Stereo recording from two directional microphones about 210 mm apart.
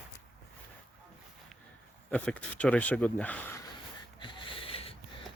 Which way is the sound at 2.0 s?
5° left (ahead or behind).